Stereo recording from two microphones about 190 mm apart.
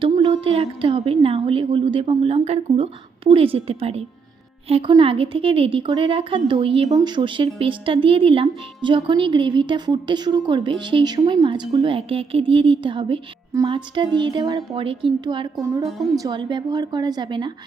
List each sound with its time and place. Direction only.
0.0 s a woman's voice: 30° right (ahead or behind)